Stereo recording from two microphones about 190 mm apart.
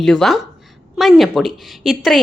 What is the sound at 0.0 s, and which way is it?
Speech, centre (ahead or behind).